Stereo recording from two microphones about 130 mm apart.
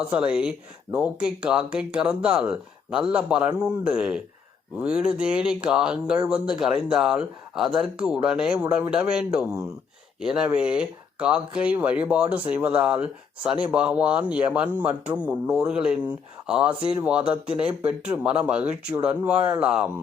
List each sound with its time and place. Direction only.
0.1 s a man's voice: 10° right (ahead or behind)